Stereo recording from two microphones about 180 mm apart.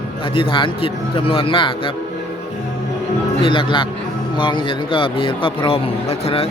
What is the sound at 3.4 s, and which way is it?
A man's voice, 25° left (ahead or behind).